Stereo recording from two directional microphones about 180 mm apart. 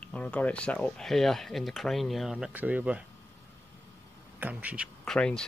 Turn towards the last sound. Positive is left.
turn(degrees=5)  # may be behind; listen again after turning